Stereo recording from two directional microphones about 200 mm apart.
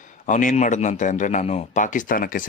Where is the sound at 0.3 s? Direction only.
40° left (ahead or behind).